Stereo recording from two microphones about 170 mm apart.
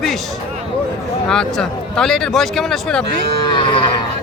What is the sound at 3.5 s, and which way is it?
Cattle, 30° left (ahead or behind).